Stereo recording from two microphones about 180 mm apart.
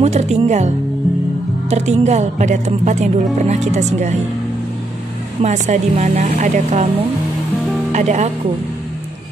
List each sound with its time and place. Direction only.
0.0 s speech: 40° right (ahead or behind)
5.4 s speech: 40° right (ahead or behind)
7.9 s speech: 40° right (ahead or behind)